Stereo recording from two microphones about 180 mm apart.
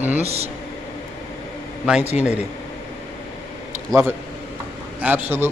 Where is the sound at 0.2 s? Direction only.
35° right (ahead or behind).